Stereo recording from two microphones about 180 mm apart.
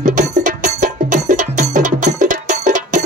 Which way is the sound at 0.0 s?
45° right (ahead or behind).